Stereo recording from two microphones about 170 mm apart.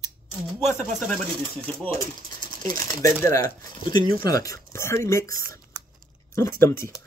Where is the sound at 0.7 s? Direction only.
45° right (ahead or behind).